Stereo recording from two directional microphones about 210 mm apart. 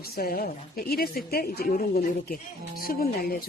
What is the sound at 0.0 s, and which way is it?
Speech, 45° left (ahead or behind).